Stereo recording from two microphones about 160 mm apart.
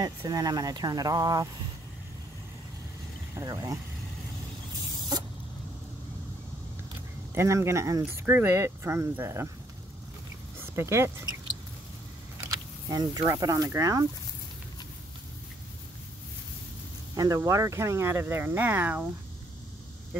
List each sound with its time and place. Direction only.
0.0 s speech: 25° right (ahead or behind)
3.3 s speech: 20° right (ahead or behind)
7.3 s speech: 15° right (ahead or behind)
10.6 s speech: 15° right (ahead or behind)
12.4 s speech: 25° right (ahead or behind)
17.1 s speech: 20° right (ahead or behind)